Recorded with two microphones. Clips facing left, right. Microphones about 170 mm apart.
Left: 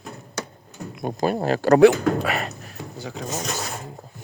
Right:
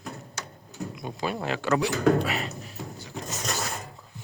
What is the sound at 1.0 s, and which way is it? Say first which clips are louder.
Speech: left 9 dB; 50° left (ahead or behind).